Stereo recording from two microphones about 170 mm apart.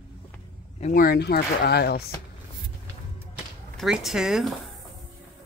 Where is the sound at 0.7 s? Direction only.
50° left (ahead or behind); by 2.0 s 70° left (ahead or behind).